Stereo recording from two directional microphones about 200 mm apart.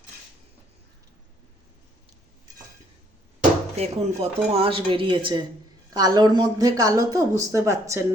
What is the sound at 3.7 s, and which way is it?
Speech, 35° right (ahead or behind).